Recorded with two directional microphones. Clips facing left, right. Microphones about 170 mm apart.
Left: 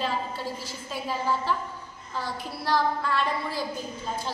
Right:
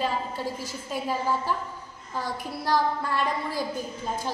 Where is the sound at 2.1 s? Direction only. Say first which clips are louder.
Right 2 dB; 15° right (ahead or behind).